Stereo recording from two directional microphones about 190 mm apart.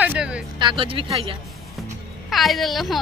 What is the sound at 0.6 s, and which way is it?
Speech, 25° right (ahead or behind).